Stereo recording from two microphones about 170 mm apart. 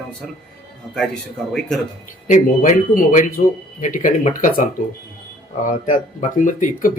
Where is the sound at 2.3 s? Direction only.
40° left (ahead or behind).